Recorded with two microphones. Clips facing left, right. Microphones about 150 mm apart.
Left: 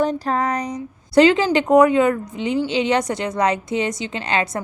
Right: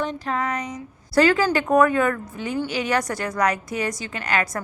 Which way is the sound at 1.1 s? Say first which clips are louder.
Left 4 dB; 20° left (ahead or behind).